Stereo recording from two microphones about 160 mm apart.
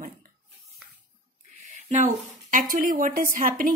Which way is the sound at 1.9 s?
55° right (ahead or behind).